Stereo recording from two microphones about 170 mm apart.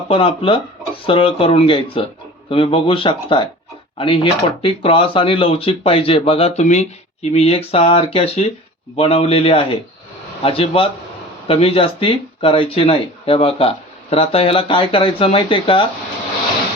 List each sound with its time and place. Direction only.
0.1 s speech: 30° left (ahead or behind)